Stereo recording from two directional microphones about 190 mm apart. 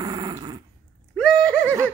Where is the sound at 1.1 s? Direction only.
5° left (ahead or behind).